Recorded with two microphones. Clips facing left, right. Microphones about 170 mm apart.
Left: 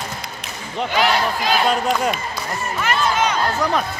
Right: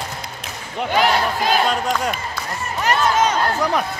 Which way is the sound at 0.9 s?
50° right (ahead or behind).